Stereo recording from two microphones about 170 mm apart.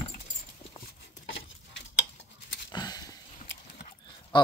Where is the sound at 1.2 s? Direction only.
90° left.